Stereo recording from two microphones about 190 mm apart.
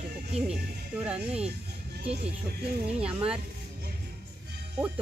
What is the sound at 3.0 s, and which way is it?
Speech, 5° right (ahead or behind).